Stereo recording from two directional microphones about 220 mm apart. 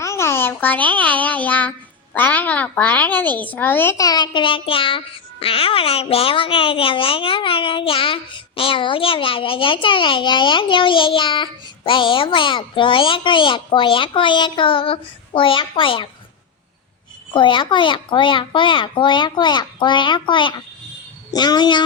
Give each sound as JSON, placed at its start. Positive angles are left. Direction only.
{"t": 0.0, "sound": "a child's voice", "side_deg": 10}
{"t": 17.3, "sound": "a child's voice", "side_deg": 20}